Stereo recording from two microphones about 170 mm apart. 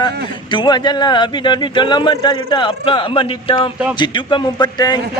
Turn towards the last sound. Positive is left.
turn(degrees=25)  # may be behind; listen again after turning